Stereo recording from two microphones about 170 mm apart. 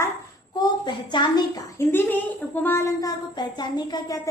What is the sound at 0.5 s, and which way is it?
A woman's voice, 25° left (ahead or behind).